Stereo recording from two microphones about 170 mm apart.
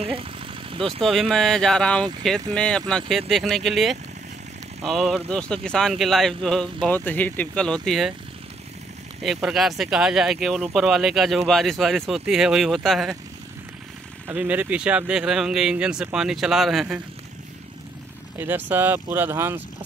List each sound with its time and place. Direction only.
0.0 s vehicle: 35° right (ahead or behind)
1.0 s speech: centre (ahead or behind)
9.2 s speech: centre (ahead or behind)
14.2 s speech: 10° right (ahead or behind)
18.4 s speech: 10° right (ahead or behind)